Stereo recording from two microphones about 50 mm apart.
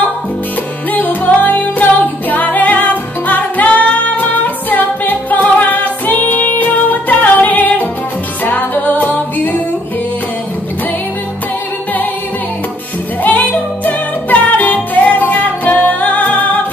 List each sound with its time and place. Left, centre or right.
0.9 s music: left
13.2 s music: left